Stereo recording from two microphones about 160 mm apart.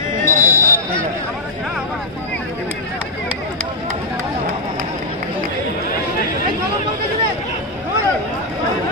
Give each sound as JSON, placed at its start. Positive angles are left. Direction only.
{"t": 0.2, "sound": "basketball bounce", "side_deg": -55}